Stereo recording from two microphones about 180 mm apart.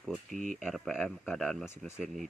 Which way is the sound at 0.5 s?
Centre (ahead or behind).